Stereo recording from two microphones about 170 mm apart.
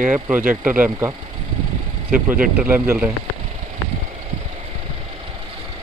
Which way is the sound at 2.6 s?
10° right (ahead or behind).